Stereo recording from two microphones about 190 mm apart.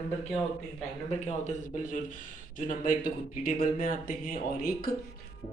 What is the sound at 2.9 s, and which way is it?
Speech, 45° left (ahead or behind).